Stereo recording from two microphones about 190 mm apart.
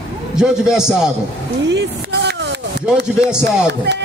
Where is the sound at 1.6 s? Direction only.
65° right (ahead or behind).